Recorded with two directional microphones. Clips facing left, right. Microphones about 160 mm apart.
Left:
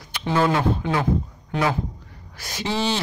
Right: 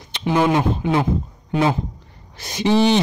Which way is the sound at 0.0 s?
20° right (ahead or behind).